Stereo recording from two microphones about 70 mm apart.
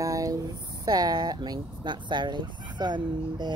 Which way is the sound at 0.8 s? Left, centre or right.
Right.